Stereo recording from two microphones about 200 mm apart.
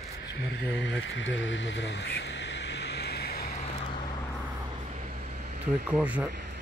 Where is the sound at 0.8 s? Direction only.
65° left (ahead or behind).